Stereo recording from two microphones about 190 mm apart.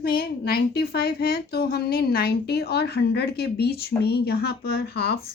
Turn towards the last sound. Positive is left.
turn(degrees=55)  # may be behind; listen again after turning